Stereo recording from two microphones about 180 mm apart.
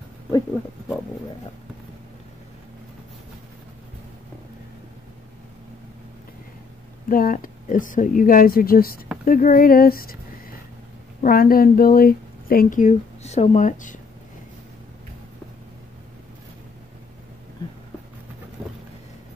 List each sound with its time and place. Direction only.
7.1 s speech: 50° left (ahead or behind)